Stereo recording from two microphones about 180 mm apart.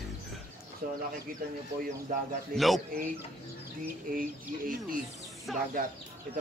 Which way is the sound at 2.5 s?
Centre (ahead or behind).